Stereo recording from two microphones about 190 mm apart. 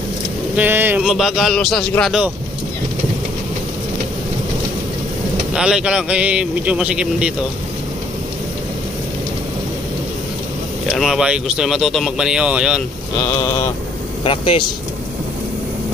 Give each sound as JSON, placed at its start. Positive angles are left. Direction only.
{"t": 0.6, "sound": "speech", "side_deg": -10}
{"t": 5.5, "sound": "speech", "side_deg": -5}
{"t": 10.9, "sound": "speech", "side_deg": 0}
{"t": 14.2, "sound": "speech", "side_deg": 30}